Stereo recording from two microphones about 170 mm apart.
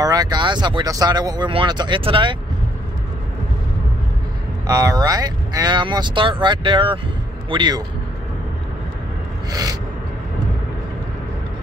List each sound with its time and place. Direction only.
0.0 s speech: 25° right (ahead or behind)
4.6 s speech: 20° right (ahead or behind)
9.5 s speech: 20° right (ahead or behind)